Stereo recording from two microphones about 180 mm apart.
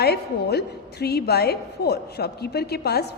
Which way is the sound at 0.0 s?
65° left (ahead or behind).